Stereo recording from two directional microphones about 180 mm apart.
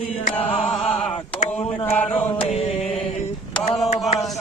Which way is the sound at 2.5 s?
35° left (ahead or behind).